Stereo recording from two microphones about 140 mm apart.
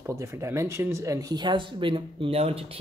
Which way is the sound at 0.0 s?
20° right (ahead or behind).